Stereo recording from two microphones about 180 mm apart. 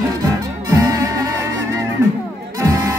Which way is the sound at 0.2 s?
20° right (ahead or behind).